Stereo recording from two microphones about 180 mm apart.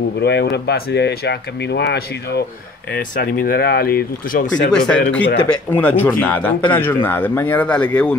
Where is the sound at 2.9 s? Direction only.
50° left (ahead or behind).